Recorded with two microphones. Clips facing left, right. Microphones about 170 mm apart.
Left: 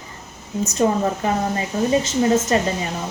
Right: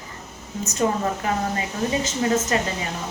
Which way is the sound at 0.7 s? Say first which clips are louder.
Left 3 dB; 30° left (ahead or behind).